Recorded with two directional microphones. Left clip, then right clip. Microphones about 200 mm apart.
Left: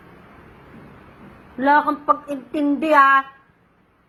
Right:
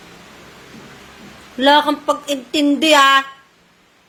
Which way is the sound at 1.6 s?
30° right (ahead or behind).